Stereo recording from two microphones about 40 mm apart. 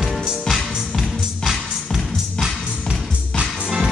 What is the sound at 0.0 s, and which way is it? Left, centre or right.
Music, centre.